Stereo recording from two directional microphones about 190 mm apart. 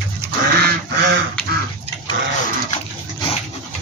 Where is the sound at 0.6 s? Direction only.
60° right (ahead or behind).